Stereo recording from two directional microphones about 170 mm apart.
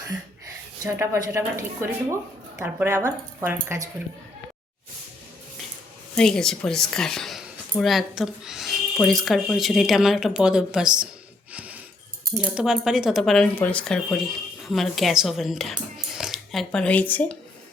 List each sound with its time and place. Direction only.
0.8 s speech: 15° right (ahead or behind)
6.1 s a woman's voice: 5° left (ahead or behind)
11.5 s a sound: 10° right (ahead or behind)
12.4 s a woman's voice: 5° right (ahead or behind); by 17.3 s 10° left (ahead or behind)